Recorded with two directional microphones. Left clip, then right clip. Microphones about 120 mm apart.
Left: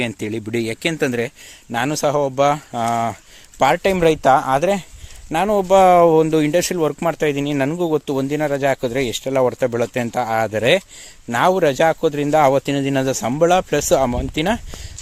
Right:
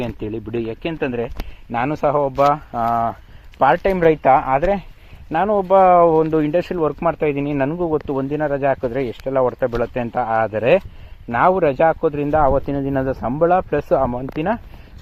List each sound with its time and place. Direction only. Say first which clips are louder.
0.0 s speech: left 2 dB; 60° left (ahead or behind)
1.7 s speech: even; 40° left (ahead or behind)
2.8 s speech: right 1 dB; 75° left (ahead or behind)
3.6 s speech: even; 50° left (ahead or behind)
7.8 s speech: left 1 dB; 65° left (ahead or behind)
10.1 s speech: right 1 dB; 45° left (ahead or behind)
10.6 s speech: right 1 dB; 75° left (ahead or behind)
11.3 s speech: even; 50° left (ahead or behind)
12.0 s speech: left 2 dB; 60° left (ahead or behind); by 14.6 s 90° left